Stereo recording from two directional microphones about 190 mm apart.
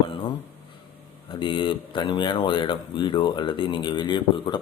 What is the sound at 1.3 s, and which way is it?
Speech, 25° left (ahead or behind).